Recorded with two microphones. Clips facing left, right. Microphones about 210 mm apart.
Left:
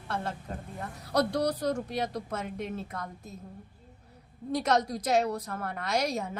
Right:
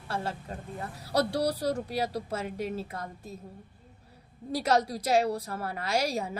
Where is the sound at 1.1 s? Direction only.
30° right (ahead or behind).